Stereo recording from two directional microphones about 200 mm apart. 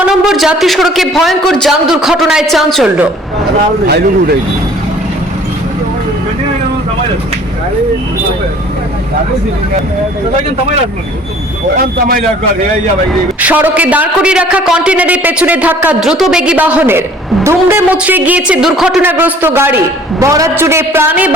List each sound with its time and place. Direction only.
0.0 s a man's voice: 5° right (ahead or behind)
3.8 s speech: 55° right (ahead or behind)
11.8 s speech: 50° right (ahead or behind)
13.1 s a woman's voice: 10° right (ahead or behind)